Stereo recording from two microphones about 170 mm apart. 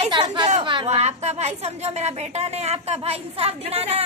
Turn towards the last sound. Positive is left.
turn(degrees=-35)  # may be behind; listen again after turning